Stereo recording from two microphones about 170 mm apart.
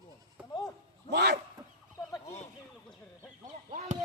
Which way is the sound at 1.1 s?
70° right (ahead or behind).